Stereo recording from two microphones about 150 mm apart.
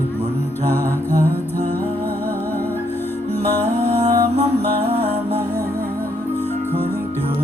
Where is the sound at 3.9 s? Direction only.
40° right (ahead or behind).